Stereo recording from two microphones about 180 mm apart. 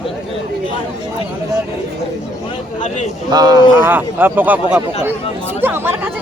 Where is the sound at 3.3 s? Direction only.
20° right (ahead or behind).